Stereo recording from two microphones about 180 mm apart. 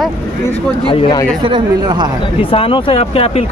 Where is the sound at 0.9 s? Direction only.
30° left (ahead or behind).